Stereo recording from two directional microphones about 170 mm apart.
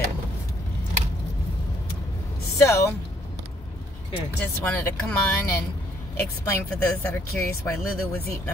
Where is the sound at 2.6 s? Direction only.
15° left (ahead or behind).